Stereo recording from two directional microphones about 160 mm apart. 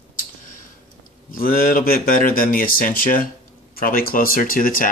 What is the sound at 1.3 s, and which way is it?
Speech, 65° left (ahead or behind).